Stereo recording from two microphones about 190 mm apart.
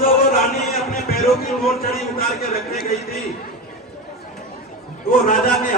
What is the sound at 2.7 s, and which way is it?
Speech, 50° left (ahead or behind).